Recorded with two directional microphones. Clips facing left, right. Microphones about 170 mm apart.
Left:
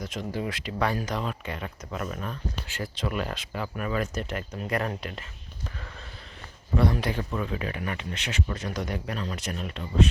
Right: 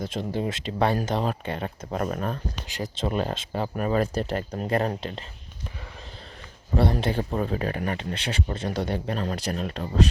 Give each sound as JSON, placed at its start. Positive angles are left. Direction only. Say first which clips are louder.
{"t": 0.0, "sound": "speech", "louder": "right 4 dB", "side_deg": -30}
{"t": 2.6, "sound": "speech", "louder": "right 4 dB", "side_deg": -20}
{"t": 6.7, "sound": "speech", "louder": "right 2 dB", "side_deg": -30}